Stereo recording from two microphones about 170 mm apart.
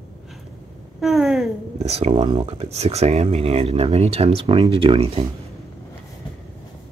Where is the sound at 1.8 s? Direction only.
40° right (ahead or behind).